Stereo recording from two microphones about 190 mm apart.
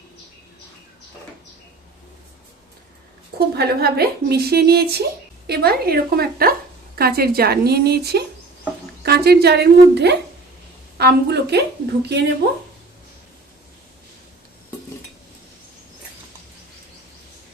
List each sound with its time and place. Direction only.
3.3 s a woman's voice: 55° right (ahead or behind)